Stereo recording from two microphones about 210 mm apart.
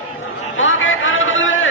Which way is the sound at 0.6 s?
70° left (ahead or behind).